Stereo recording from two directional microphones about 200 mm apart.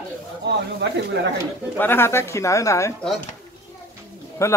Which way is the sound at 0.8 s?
60° right (ahead or behind).